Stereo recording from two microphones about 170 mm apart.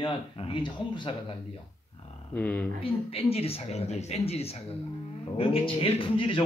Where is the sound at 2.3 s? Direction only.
10° left (ahead or behind).